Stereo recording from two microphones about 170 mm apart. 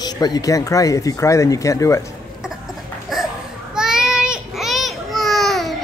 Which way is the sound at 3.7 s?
5° right (ahead or behind).